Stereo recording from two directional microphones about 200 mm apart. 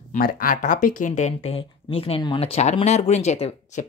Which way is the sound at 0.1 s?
45° left (ahead or behind).